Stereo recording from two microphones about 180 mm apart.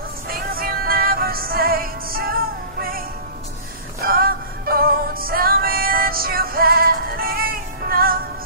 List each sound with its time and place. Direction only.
0.3 s music: 55° right (ahead or behind)
4.0 s music: 55° right (ahead or behind)